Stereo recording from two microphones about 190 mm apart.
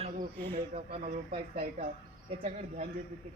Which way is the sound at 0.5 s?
35° right (ahead or behind).